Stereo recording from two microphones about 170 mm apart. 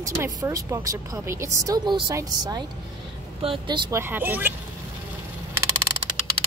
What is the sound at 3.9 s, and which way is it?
Speech, 10° right (ahead or behind).